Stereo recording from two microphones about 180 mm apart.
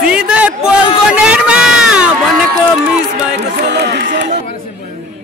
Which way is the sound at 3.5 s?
65° right (ahead or behind).